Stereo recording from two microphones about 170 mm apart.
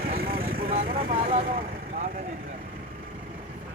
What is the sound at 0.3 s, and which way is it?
Vehicle, 60° right (ahead or behind).